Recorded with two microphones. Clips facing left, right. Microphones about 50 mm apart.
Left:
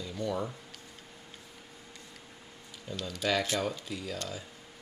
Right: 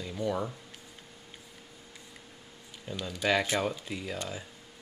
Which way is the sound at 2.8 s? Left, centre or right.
Centre.